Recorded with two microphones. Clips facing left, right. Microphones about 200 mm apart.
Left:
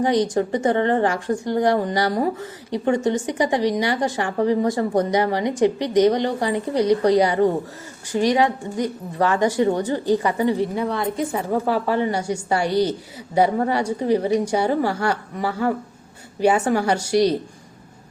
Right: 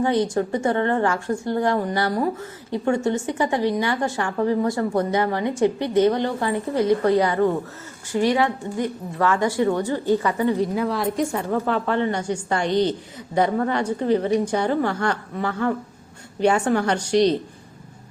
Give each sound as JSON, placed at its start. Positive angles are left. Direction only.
{"t": 0.0, "sound": "a woman's voice", "side_deg": 15}
{"t": 10.6, "sound": "a woman's voice", "side_deg": 0}
{"t": 11.3, "sound": "a woman's voice", "side_deg": 15}